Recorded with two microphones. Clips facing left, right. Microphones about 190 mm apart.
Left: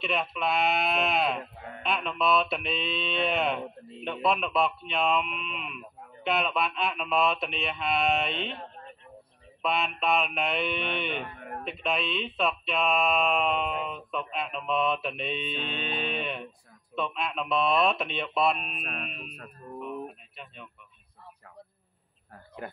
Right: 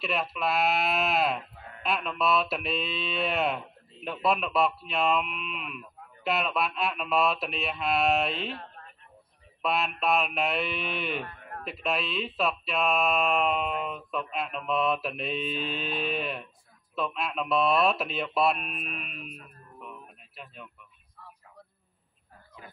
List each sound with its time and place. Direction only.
0.0 s speech: centre (ahead or behind)
8.5 s a sound: 25° left (ahead or behind)
9.6 s speech: centre (ahead or behind)
19.0 s speech: 40° left (ahead or behind)
20.4 s speech: centre (ahead or behind)
22.3 s a sound: 65° left (ahead or behind)